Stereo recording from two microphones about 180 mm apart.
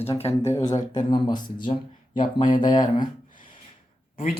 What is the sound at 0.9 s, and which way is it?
Speech, 25° left (ahead or behind).